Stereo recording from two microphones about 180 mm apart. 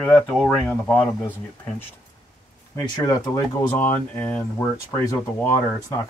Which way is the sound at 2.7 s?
20° left (ahead or behind).